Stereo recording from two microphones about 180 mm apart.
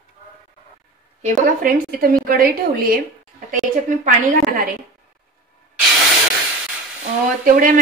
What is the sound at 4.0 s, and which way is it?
Speech, 50° right (ahead or behind).